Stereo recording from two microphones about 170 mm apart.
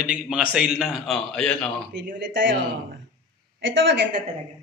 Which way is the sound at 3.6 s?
90° right.